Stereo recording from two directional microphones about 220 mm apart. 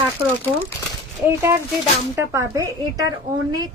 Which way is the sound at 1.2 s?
10° right (ahead or behind).